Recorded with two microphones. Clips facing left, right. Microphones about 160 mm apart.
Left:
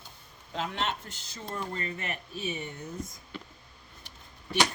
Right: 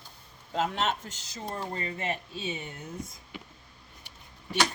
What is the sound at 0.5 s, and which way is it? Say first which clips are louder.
Speech: right 4 dB; 45° right (ahead or behind).